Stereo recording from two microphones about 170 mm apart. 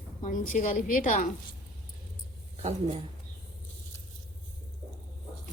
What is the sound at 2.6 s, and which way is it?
Speech, 40° right (ahead or behind).